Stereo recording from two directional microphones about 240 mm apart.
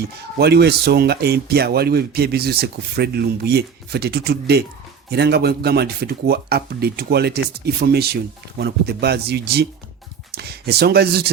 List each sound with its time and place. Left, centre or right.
0.3 s speech: right